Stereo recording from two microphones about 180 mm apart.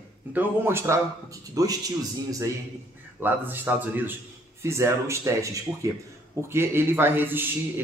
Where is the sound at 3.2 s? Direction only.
10° right (ahead or behind).